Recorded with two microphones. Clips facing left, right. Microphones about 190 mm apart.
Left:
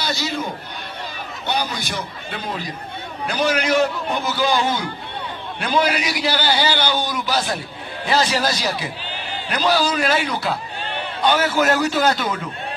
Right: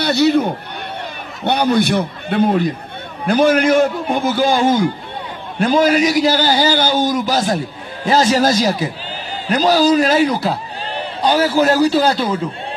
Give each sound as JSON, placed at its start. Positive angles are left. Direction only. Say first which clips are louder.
{"t": 0.0, "sound": "a man's voice", "louder": "right 11 dB", "side_deg": -60}